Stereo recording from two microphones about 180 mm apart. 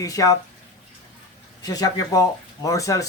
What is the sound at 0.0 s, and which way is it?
Speech, 20° left (ahead or behind).